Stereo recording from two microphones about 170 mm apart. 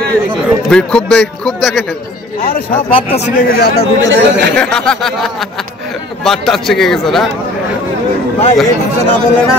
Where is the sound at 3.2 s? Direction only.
70° left (ahead or behind).